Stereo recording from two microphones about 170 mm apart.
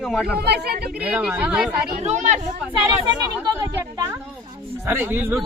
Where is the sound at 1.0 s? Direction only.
10° right (ahead or behind).